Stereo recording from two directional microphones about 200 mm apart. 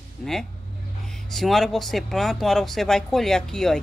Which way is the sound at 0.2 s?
Centre (ahead or behind).